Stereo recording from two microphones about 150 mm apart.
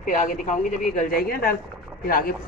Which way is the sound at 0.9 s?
80° left.